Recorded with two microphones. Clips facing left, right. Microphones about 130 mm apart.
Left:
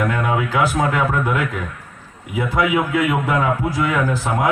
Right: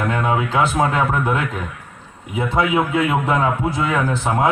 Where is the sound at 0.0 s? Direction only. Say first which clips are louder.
Even; 25° right (ahead or behind).